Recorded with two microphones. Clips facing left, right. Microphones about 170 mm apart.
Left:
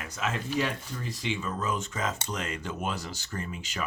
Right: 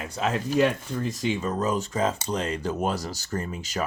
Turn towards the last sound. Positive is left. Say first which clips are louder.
# right 6 dB
turn(degrees=-40)  # may be behind; listen again after turning